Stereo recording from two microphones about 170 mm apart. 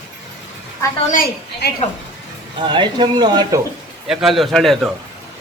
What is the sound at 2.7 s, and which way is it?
Speech, 25° right (ahead or behind).